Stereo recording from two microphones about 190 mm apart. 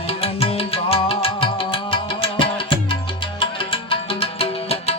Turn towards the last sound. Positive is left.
turn(degrees=30)  # may be behind; listen again after turning